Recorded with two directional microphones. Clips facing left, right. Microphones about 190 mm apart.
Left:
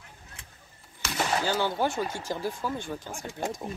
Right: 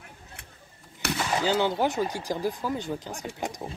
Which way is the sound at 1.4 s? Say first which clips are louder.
Right 5 dB; 15° right (ahead or behind).